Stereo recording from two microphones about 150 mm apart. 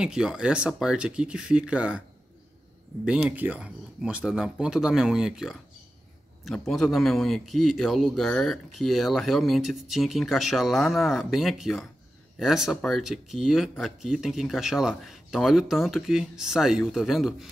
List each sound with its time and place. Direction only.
0.0 s speech: 5° right (ahead or behind)
3.1 s a man's voice: 10° right (ahead or behind)